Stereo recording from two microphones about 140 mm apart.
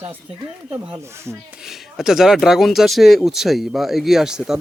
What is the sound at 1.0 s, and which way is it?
Speech, 20° right (ahead or behind).